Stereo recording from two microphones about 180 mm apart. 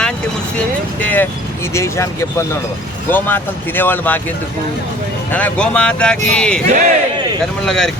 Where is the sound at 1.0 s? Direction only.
10° left (ahead or behind).